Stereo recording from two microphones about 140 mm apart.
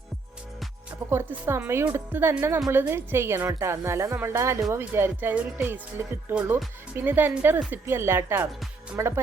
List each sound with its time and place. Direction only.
1.1 s a woman's voice: 15° right (ahead or behind)